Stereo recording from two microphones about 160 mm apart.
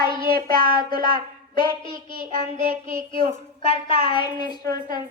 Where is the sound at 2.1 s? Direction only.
60° right (ahead or behind).